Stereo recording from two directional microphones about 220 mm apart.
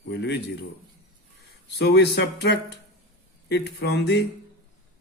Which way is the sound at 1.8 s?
50° left (ahead or behind).